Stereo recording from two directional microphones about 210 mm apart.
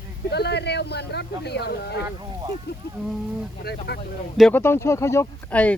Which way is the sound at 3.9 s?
50° left (ahead or behind).